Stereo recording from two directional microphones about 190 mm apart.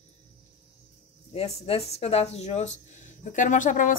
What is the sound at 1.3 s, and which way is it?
Speech, 30° left (ahead or behind).